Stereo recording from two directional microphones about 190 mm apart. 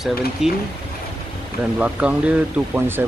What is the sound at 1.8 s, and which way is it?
Speech, 5° right (ahead or behind).